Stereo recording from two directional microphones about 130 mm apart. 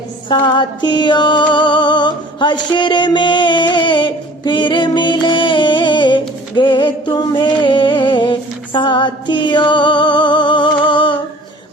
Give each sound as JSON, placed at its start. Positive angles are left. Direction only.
{"t": 0.3, "sound": "music", "side_deg": 35}